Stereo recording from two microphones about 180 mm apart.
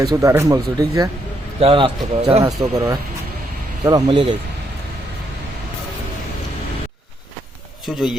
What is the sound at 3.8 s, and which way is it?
Speech, 25° right (ahead or behind).